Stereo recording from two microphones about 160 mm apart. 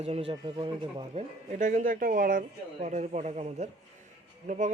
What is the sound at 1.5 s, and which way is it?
Speech, 55° right (ahead or behind).